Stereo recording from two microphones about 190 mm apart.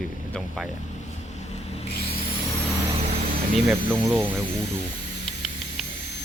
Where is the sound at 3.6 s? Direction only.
5° right (ahead or behind).